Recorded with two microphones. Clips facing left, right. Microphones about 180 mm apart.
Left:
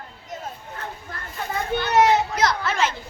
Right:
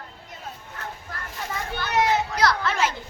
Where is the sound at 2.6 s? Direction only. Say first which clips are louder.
Left 1 dB; 5° right (ahead or behind).